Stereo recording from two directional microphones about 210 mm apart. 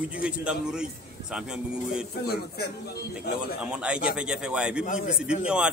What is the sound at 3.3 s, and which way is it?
Speech, 50° left (ahead or behind).